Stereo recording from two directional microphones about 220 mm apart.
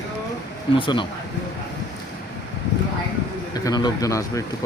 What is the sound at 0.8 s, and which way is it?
Speech, 20° left (ahead or behind).